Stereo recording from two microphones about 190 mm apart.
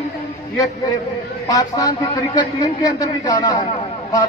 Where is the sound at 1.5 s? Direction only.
20° left (ahead or behind).